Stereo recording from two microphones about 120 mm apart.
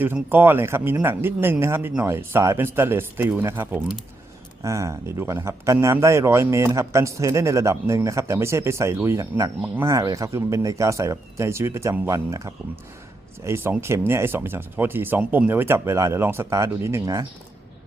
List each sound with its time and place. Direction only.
0.0 s speech: 15° right (ahead or behind)